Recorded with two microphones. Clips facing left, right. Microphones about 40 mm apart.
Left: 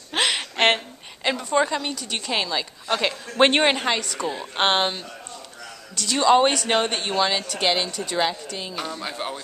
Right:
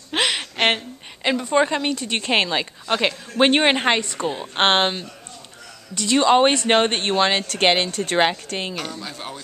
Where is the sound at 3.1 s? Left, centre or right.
Centre.